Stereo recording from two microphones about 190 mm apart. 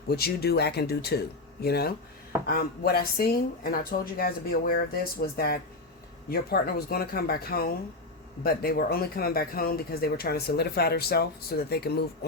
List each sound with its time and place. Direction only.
0.1 s speech: 55° left (ahead or behind)